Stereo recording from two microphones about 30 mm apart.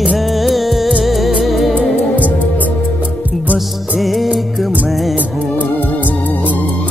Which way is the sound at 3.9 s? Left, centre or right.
Centre.